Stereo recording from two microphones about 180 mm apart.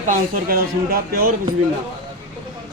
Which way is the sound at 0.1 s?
55° right (ahead or behind).